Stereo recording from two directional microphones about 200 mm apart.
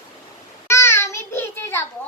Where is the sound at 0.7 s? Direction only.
15° left (ahead or behind).